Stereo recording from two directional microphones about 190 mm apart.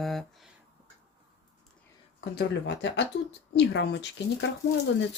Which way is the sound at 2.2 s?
60° left (ahead or behind).